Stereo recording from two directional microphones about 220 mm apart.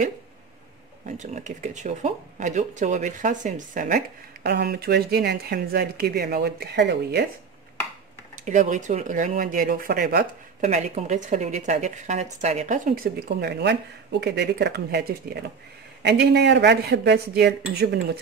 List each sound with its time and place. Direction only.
1.0 s speech: 35° right (ahead or behind); by 7.2 s 50° right (ahead or behind)
8.5 s speech: 35° right (ahead or behind)